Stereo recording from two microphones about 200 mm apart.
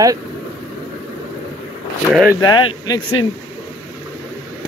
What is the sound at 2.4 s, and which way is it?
Speech, 20° left (ahead or behind).